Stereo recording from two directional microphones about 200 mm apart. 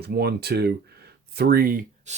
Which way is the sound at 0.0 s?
55° right (ahead or behind).